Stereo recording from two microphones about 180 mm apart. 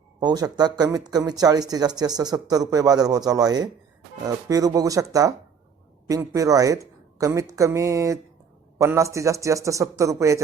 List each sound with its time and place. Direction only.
0.2 s speech: 20° right (ahead or behind)